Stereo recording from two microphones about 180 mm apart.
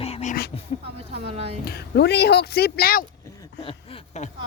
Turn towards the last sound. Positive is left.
turn(degrees=35)  # may be behind; listen again after turning